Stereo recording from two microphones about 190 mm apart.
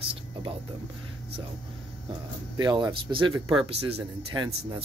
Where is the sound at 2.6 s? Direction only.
20° right (ahead or behind).